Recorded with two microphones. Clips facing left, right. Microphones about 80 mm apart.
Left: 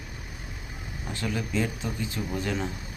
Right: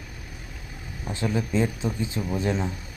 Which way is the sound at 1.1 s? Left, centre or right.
Right.